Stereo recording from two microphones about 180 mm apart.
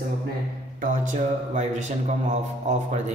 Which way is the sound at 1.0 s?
40° right (ahead or behind).